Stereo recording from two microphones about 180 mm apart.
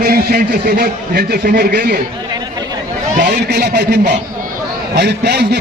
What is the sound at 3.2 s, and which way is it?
A man's voice, 65° right (ahead or behind).